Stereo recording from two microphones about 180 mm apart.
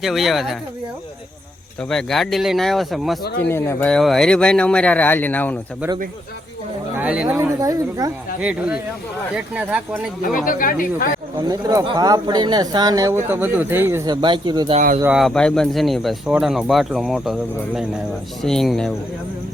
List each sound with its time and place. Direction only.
0.0 s speech: centre (ahead or behind)
1.8 s speech: 5° left (ahead or behind)
3.5 s speech: 15° left (ahead or behind)
3.9 s speech: centre (ahead or behind)
6.9 s speech: 5° right (ahead or behind)
7.6 s speech: 20° right (ahead or behind)
8.4 s speech: 5° right (ahead or behind)
10.3 s speech: 50° left (ahead or behind)
11.4 s speech: 25° right (ahead or behind)
15.0 s speech: 5° right (ahead or behind)
18.4 s speech: centre (ahead or behind)